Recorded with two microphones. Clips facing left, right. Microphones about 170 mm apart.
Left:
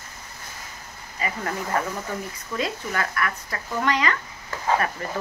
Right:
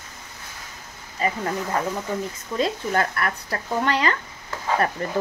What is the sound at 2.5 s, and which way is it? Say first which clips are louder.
Speech: right 5 dB; 35° right (ahead or behind).